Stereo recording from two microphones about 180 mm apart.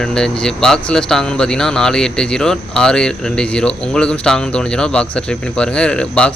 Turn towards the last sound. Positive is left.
turn(degrees=5)  # may be behind; listen again after turning